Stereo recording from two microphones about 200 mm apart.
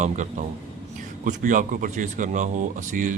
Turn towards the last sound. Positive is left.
turn(degrees=-40)  # may be behind; listen again after turning